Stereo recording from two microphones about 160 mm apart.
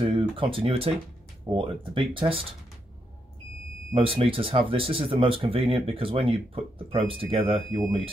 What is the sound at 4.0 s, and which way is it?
Speech, 35° right (ahead or behind).